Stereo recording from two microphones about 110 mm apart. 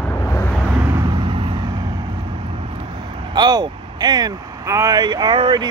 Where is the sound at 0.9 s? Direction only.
40° right (ahead or behind).